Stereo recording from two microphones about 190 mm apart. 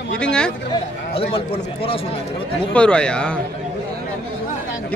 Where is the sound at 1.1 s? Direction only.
30° left (ahead or behind).